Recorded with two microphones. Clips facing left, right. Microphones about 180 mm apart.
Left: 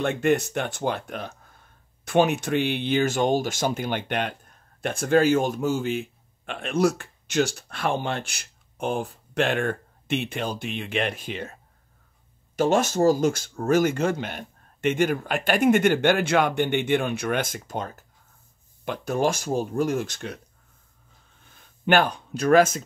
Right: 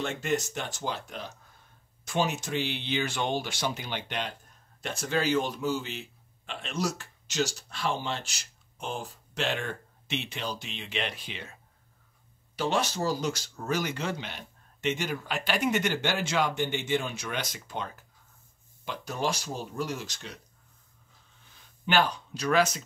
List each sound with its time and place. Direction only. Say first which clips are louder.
0.0 s speech: left 8 dB; 55° left (ahead or behind)
12.5 s speech: left 8 dB; 45° left (ahead or behind)
21.5 s speech: left 9 dB; 55° left (ahead or behind)